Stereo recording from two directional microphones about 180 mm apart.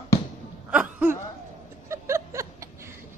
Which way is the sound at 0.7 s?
5° right (ahead or behind).